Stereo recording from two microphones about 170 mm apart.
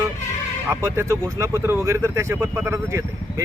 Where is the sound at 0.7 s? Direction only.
15° right (ahead or behind).